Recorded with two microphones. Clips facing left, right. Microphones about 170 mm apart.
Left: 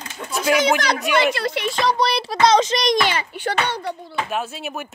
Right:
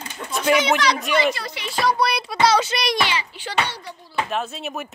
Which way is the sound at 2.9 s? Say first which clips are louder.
Left 3 dB; 45° left (ahead or behind).